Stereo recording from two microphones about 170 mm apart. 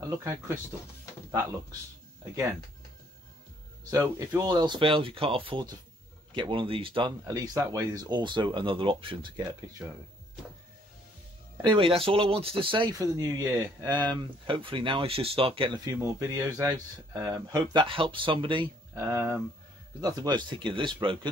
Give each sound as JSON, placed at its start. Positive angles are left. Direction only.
{"t": 4.2, "sound": "speech", "side_deg": -20}
{"t": 11.6, "sound": "speech", "side_deg": -30}
{"t": 15.8, "sound": "speech", "side_deg": -20}
{"t": 18.9, "sound": "speech", "side_deg": -15}